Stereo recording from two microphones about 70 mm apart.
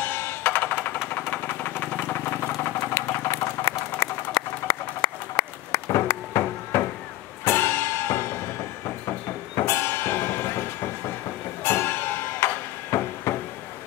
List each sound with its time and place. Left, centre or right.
0.0 s music: left
1.3 s engine: left
2.8 s engine: left
4.0 s a sound: left
7.4 s music: left
9.7 s music: left
11.6 s music: left
12.9 s a sound: left